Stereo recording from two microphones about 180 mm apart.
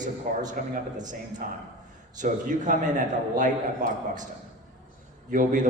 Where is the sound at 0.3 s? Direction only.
45° right (ahead or behind).